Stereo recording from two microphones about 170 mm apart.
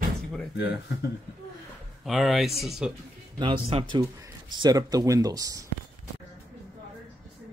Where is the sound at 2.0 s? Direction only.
Centre (ahead or behind).